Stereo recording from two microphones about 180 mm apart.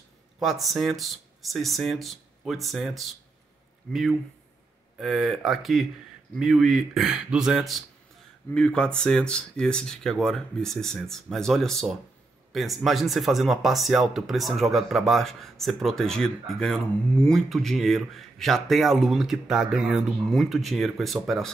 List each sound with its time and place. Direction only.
0.4 s speech: centre (ahead or behind)